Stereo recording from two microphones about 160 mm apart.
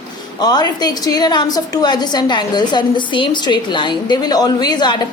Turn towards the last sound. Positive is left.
turn(degrees=25)  # may be behind; listen again after turning